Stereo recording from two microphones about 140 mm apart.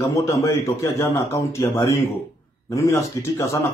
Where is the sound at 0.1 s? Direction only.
20° left (ahead or behind).